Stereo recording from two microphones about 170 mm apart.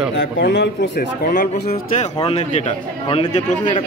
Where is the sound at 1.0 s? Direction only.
55° left (ahead or behind).